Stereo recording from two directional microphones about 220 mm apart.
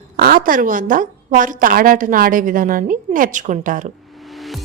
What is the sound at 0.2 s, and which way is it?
A woman's voice, 40° right (ahead or behind).